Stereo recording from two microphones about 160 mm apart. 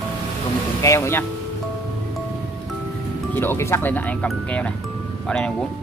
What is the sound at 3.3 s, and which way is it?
Speech, 15° left (ahead or behind).